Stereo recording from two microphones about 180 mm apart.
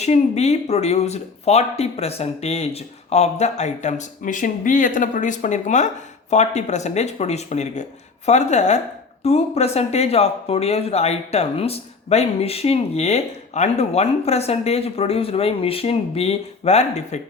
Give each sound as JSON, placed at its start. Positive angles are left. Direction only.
{"t": 0.0, "sound": "speech", "side_deg": 40}